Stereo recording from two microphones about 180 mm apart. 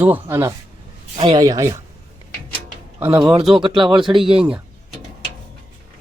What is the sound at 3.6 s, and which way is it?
Speech, 25° right (ahead or behind).